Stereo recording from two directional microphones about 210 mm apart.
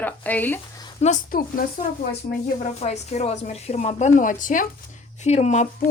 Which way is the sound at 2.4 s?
30° left (ahead or behind).